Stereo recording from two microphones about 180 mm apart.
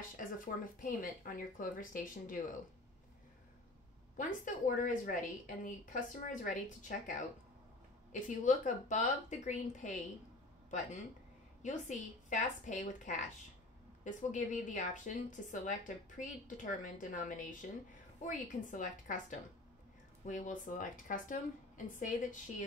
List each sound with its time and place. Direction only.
0.7 s a woman's voice: 45° left (ahead or behind)
4.2 s a woman's voice: 45° left (ahead or behind)
20.2 s a woman's voice: 45° left (ahead or behind)